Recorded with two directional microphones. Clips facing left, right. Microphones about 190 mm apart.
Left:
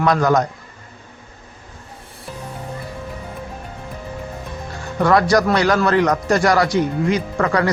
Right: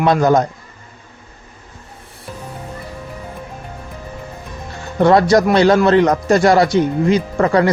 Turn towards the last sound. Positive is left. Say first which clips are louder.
# right 4 dB
turn(degrees=-25)  # may be behind; listen again after turning